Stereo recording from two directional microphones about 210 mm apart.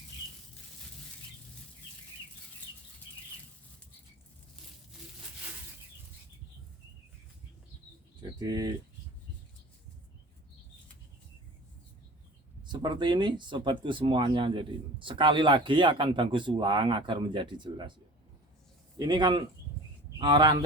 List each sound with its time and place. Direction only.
8.2 s bird: 20° right (ahead or behind)
12.6 s speech: 20° right (ahead or behind)
18.9 s speech: 20° right (ahead or behind)